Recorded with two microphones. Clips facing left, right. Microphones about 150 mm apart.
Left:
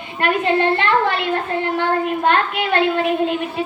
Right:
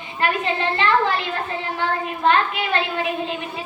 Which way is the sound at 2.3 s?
55° left (ahead or behind).